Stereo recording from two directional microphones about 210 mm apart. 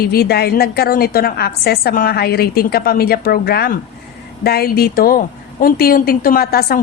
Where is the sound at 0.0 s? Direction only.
45° left (ahead or behind).